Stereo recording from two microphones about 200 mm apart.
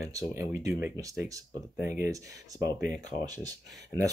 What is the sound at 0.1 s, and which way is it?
Speech, 15° right (ahead or behind).